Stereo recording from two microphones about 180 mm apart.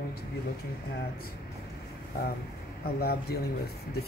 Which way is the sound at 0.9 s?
55° left (ahead or behind).